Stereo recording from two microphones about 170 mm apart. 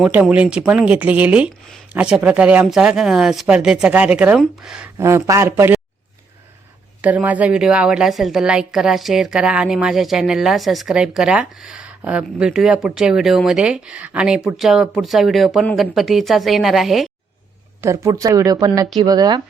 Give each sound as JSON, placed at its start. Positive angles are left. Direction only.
{"t": 0.0, "sound": "a woman's voice", "side_deg": -5}
{"t": 4.9, "sound": "speech", "side_deg": -15}
{"t": 7.0, "sound": "a woman's voice", "side_deg": -10}
{"t": 17.7, "sound": "speech", "side_deg": -15}